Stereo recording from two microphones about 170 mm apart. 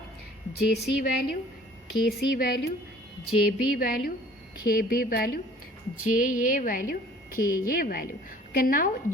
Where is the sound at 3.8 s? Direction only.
60° left (ahead or behind).